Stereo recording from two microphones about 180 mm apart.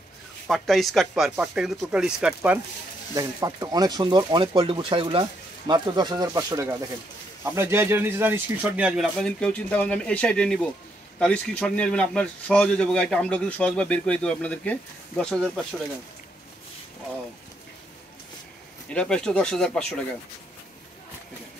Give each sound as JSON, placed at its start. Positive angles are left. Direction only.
{"t": 0.5, "sound": "speech", "side_deg": 0}
{"t": 3.2, "sound": "speech", "side_deg": -20}
{"t": 18.9, "sound": "speech", "side_deg": 5}